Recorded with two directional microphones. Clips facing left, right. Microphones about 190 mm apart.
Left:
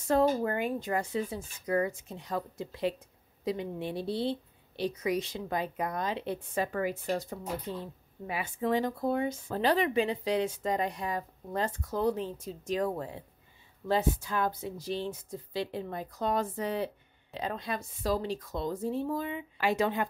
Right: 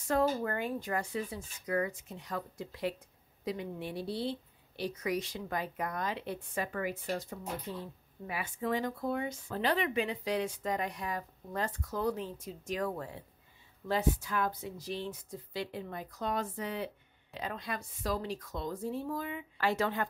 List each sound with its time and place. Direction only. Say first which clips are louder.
0.1 s speech: left 4 dB; 25° left (ahead or behind)